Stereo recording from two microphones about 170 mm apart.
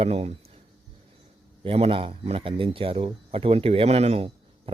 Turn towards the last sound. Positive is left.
turn(degrees=-35)  # may be behind; listen again after turning